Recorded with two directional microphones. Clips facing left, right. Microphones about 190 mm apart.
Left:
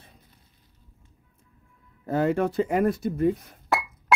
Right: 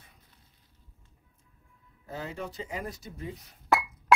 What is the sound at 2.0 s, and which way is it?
Speech, 65° left (ahead or behind).